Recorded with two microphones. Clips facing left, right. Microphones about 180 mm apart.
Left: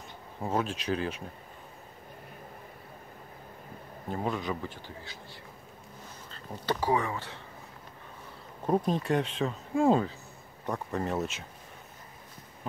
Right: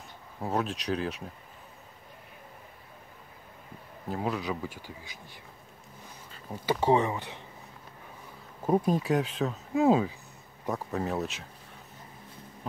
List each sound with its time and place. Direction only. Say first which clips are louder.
0.4 s speech: even; centre (ahead or behind)
4.1 s speech: right 1 dB; 5° right (ahead or behind)
6.3 s a sound: right 2 dB; 10° right (ahead or behind)
6.8 s speech: right 5 dB; 25° right (ahead or behind)
8.6 s speech: right 2 dB; 5° right (ahead or behind)